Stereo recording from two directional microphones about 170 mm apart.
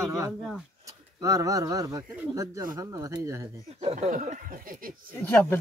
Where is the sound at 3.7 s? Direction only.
40° right (ahead or behind); by 5.0 s 55° right (ahead or behind).